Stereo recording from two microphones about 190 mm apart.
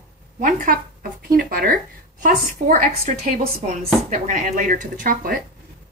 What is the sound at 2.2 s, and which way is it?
A woman's voice, 40° right (ahead or behind).